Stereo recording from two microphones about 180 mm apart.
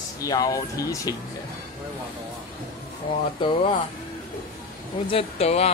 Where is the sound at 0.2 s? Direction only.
20° left (ahead or behind).